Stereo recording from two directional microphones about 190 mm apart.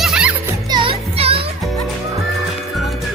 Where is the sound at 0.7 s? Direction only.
25° right (ahead or behind).